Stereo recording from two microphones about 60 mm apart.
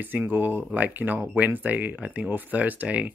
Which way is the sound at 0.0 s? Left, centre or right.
Right.